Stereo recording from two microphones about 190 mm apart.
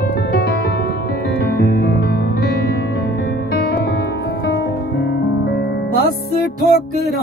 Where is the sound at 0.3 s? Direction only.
55° left (ahead or behind).